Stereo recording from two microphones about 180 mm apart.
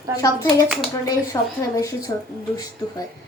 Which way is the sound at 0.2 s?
20° left (ahead or behind).